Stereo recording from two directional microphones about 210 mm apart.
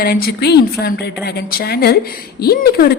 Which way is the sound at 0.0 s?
45° left (ahead or behind).